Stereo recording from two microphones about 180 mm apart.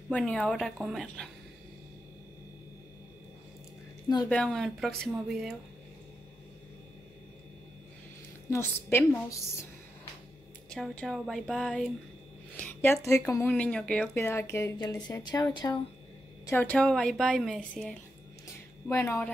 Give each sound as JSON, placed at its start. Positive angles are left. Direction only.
{"t": 0.1, "sound": "a woman's voice", "side_deg": 5}
{"t": 4.3, "sound": "a woman's voice", "side_deg": 5}
{"t": 8.5, "sound": "speech", "side_deg": 15}
{"t": 10.7, "sound": "a woman's voice", "side_deg": 5}